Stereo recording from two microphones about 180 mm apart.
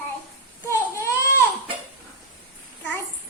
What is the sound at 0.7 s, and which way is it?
Baby cry, 15° left (ahead or behind).